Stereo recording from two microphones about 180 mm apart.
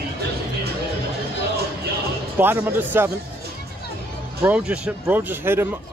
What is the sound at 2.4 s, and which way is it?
Speech, 15° right (ahead or behind).